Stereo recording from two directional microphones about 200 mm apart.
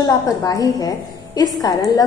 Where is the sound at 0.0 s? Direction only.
20° left (ahead or behind).